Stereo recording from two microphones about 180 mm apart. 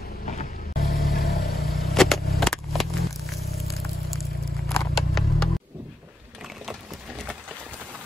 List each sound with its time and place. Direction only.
0.7 s vehicle: 60° left (ahead or behind)
2.0 s a sound: centre (ahead or behind)
6.6 s boat: 5° right (ahead or behind)